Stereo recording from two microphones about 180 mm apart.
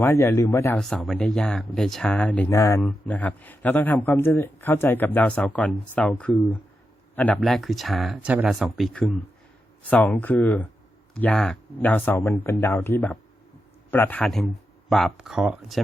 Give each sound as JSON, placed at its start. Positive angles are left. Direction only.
{"t": 0.0, "sound": "speech", "side_deg": 15}
{"t": 0.8, "sound": "speech", "side_deg": 5}